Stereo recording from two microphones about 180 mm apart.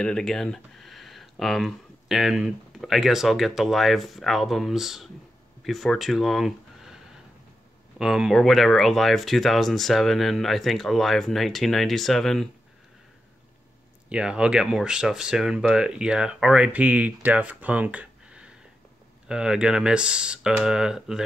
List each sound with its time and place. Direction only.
0.0 s speech: 5° left (ahead or behind)
8.0 s speech: 5° right (ahead or behind)
14.0 s speech: 5° right (ahead or behind)